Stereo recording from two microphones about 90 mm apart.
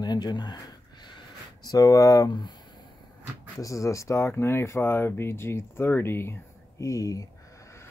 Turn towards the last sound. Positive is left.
turn(degrees=40)  # may be behind; listen again after turning